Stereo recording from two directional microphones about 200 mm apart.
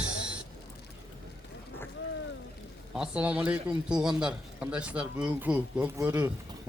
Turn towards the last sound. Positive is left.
turn(degrees=-10)  # may be behind; listen again after turning